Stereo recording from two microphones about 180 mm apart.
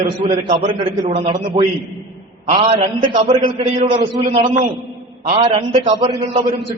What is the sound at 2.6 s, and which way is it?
A man's voice, 40° right (ahead or behind).